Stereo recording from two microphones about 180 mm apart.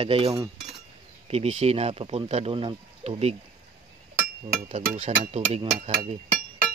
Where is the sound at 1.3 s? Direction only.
35° right (ahead or behind).